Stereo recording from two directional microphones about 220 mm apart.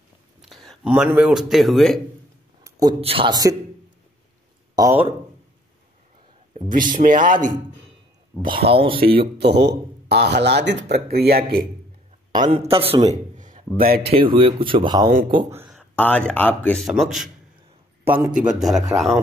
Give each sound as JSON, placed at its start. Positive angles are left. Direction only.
{"t": 0.4, "sound": "speech", "side_deg": 0}
{"t": 2.6, "sound": "speech", "side_deg": -20}
{"t": 4.7, "sound": "speech", "side_deg": -15}
{"t": 6.5, "sound": "a man's voice", "side_deg": -35}
{"t": 8.6, "sound": "speech", "side_deg": -25}
{"t": 9.4, "sound": "speech", "side_deg": -50}
{"t": 12.4, "sound": "speech", "side_deg": -25}
{"t": 13.4, "sound": "a sound", "side_deg": -35}
{"t": 14.0, "sound": "speech", "side_deg": -25}
{"t": 15.5, "sound": "a sound", "side_deg": -10}
{"t": 15.8, "sound": "a man's voice", "side_deg": 5}